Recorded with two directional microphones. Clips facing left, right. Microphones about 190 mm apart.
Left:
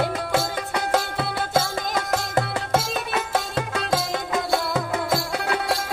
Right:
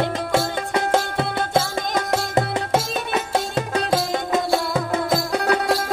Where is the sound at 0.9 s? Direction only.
25° right (ahead or behind).